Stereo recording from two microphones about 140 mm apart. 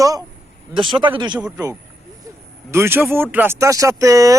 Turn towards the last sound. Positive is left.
turn(degrees=-25)  # may be behind; listen again after turning